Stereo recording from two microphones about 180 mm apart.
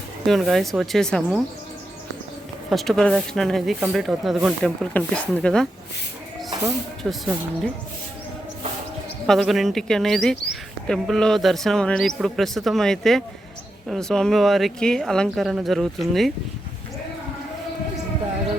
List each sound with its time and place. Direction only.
0.3 s speech: centre (ahead or behind)
2.6 s speech: centre (ahead or behind)
6.5 s a sound: 15° right (ahead or behind)
7.0 s speech: centre (ahead or behind)
9.2 s speech: centre (ahead or behind)